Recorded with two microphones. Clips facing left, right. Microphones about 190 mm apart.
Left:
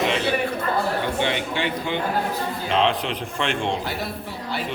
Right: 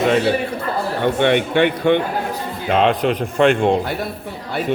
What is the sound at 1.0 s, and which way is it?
Speech, 60° right (ahead or behind).